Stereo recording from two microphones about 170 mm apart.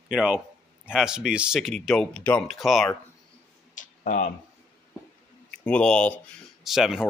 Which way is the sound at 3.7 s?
50° left (ahead or behind).